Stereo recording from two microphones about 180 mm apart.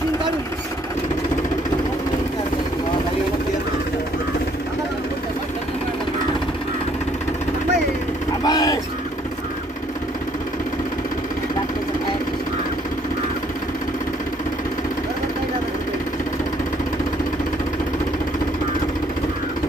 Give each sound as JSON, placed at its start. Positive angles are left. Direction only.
{"t": 8.5, "sound": "vehicle", "side_deg": 20}